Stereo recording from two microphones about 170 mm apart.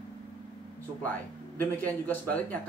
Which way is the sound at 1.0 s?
10° left (ahead or behind).